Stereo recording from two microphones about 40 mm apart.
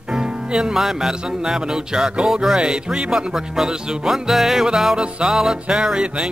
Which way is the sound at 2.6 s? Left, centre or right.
Right.